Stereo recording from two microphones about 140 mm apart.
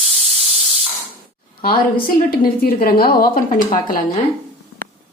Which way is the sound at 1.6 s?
90° left.